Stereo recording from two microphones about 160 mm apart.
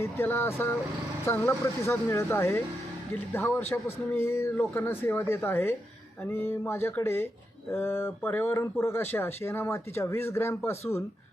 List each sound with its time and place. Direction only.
0.0 s speech: 15° left (ahead or behind)